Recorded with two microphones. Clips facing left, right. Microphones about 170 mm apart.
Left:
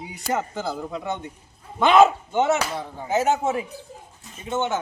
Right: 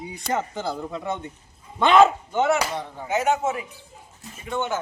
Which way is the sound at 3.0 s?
35° left (ahead or behind).